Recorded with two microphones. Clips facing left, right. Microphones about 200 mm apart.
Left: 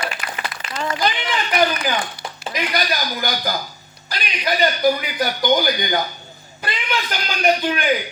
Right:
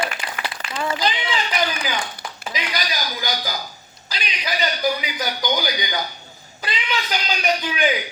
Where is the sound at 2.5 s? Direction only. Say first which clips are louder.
Left 5 dB; 55° left (ahead or behind).